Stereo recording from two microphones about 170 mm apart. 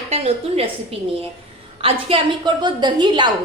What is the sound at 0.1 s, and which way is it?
A woman's voice, 35° right (ahead or behind).